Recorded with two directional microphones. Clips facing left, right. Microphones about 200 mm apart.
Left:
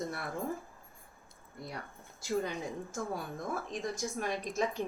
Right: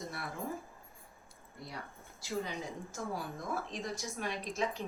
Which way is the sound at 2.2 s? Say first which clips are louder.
Left 4 dB; 50° left (ahead or behind).